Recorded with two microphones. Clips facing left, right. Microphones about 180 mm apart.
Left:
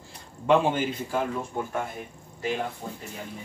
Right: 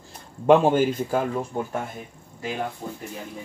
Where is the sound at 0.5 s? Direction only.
45° right (ahead or behind).